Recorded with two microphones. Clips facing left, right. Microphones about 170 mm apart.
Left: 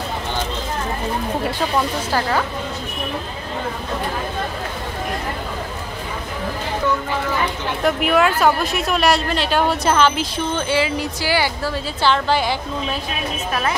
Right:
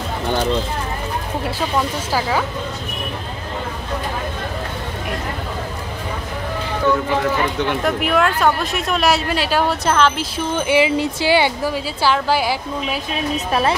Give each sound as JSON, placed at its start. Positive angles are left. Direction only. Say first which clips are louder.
{"t": 2.1, "sound": "a woman's voice", "louder": "even", "side_deg": -10}
{"t": 7.8, "sound": "speech", "louder": "left 3 dB", "side_deg": 0}
{"t": 10.7, "sound": "speech", "louder": "right 8 dB", "side_deg": -20}
{"t": 11.7, "sound": "a woman's voice", "louder": "even", "side_deg": -5}
{"t": 13.5, "sound": "speech", "louder": "right 4 dB", "side_deg": -25}